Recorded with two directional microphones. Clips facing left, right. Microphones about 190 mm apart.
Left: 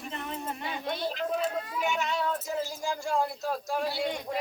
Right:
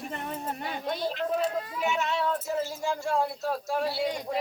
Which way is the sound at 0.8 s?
Centre (ahead or behind).